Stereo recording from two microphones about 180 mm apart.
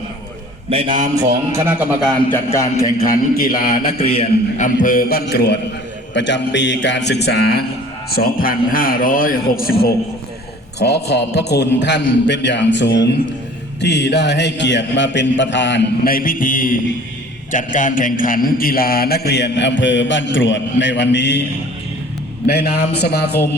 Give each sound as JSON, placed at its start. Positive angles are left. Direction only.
{"t": 0.7, "sound": "a man's voice", "side_deg": -30}
{"t": 1.2, "sound": "music", "side_deg": -15}
{"t": 2.3, "sound": "a man's voice", "side_deg": 15}
{"t": 2.8, "sound": "a man's voice", "side_deg": 50}
{"t": 4.0, "sound": "a man's voice", "side_deg": 30}
{"t": 6.1, "sound": "a man's voice", "side_deg": 90}
{"t": 10.8, "sound": "a man's voice", "side_deg": 70}
{"t": 13.8, "sound": "a man's voice", "side_deg": 70}
{"t": 16.0, "sound": "a man's voice", "side_deg": 50}
{"t": 22.4, "sound": "a man's voice", "side_deg": 60}